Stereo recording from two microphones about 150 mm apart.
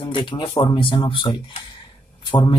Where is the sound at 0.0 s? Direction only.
35° left (ahead or behind).